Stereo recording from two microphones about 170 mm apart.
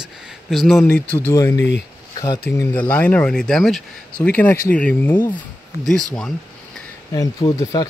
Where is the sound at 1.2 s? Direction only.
20° left (ahead or behind).